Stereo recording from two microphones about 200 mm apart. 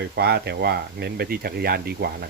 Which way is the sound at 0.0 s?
55° right (ahead or behind).